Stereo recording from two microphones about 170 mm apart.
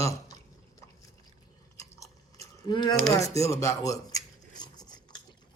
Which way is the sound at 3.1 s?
20° left (ahead or behind).